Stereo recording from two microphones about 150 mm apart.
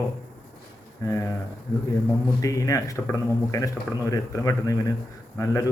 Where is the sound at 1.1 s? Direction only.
20° left (ahead or behind).